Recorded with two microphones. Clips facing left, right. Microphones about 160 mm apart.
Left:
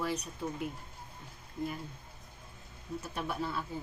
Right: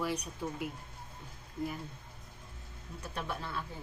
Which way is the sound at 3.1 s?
10° left (ahead or behind).